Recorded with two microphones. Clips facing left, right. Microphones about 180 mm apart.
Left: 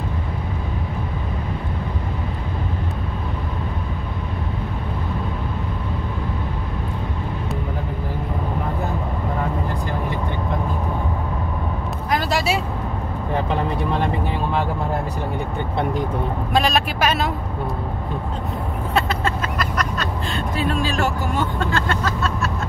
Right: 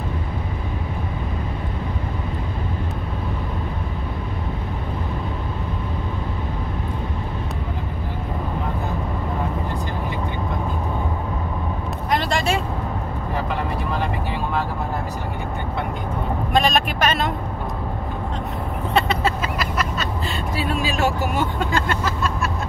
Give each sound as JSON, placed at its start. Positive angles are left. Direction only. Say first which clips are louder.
{"t": 12.1, "sound": "vehicle", "louder": "even", "side_deg": 5}
{"t": 16.5, "sound": "vehicle", "louder": "even", "side_deg": 5}
{"t": 18.9, "sound": "vehicle", "louder": "right 1 dB", "side_deg": -5}